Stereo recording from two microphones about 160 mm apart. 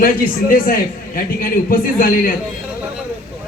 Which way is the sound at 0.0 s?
60° left (ahead or behind).